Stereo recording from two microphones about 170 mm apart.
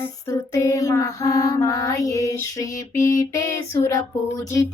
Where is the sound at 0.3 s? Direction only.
20° left (ahead or behind).